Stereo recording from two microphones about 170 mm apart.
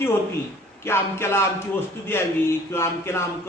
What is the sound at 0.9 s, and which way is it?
A man's voice, 15° left (ahead or behind).